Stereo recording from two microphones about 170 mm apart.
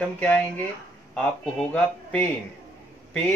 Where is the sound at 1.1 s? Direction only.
5° left (ahead or behind).